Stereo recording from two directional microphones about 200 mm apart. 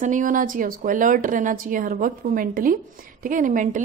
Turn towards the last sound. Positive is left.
turn(degrees=-40)  # may be behind; listen again after turning